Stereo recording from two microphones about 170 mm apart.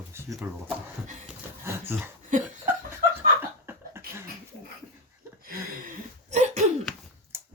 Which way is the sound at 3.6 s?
15° right (ahead or behind).